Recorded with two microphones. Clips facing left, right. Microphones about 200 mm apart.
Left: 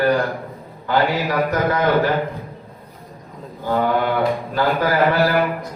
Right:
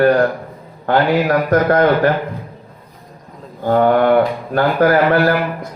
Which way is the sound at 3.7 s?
60° right (ahead or behind).